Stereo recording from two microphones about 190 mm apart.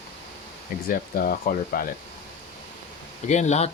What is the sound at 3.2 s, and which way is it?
Speech, 35° left (ahead or behind).